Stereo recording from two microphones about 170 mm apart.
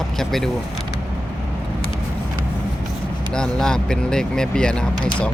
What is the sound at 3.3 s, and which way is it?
Speech, 5° left (ahead or behind).